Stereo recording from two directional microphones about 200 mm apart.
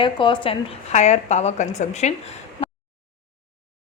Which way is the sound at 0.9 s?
35° left (ahead or behind).